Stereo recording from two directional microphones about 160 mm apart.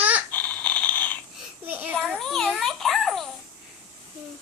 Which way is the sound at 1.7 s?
10° right (ahead or behind).